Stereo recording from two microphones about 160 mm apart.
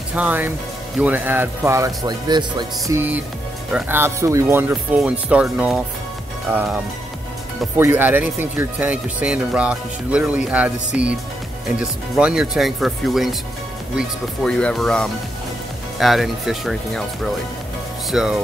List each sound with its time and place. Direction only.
0.1 s speech: 10° right (ahead or behind); by 3.0 s 25° right (ahead or behind)
3.7 s speech: 15° right (ahead or behind)
14.4 s speech: 5° left (ahead or behind)